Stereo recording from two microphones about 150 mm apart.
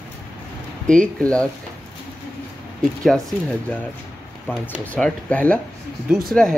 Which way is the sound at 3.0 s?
5° left (ahead or behind).